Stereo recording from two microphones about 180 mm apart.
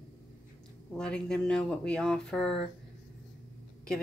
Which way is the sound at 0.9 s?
5° left (ahead or behind).